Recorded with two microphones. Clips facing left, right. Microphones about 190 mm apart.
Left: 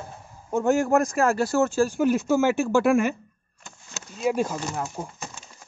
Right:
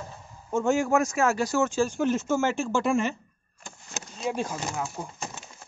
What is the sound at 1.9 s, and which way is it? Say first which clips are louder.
Speech: left 4 dB; 10° left (ahead or behind).